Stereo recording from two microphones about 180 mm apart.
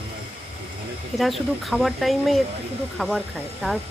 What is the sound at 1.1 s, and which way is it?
Speech, centre (ahead or behind).